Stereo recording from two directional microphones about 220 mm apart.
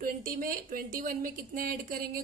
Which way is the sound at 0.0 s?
40° right (ahead or behind).